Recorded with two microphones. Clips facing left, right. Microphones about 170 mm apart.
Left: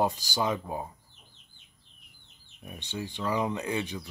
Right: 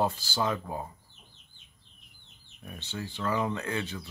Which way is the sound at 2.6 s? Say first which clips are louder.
Left 2 dB; 15° left (ahead or behind).